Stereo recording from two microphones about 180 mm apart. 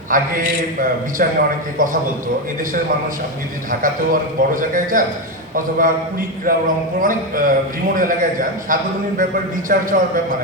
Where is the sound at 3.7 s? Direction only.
50° right (ahead or behind).